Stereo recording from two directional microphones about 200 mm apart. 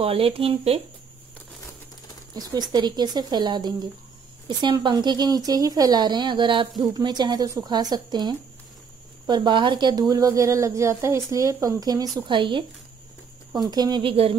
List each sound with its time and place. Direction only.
0.0 s speech: 30° right (ahead or behind)
2.3 s a woman's voice: 20° right (ahead or behind)